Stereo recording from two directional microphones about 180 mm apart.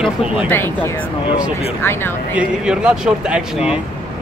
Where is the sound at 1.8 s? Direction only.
10° left (ahead or behind).